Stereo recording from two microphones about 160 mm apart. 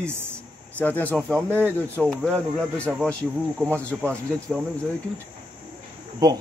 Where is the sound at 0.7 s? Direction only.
10° left (ahead or behind).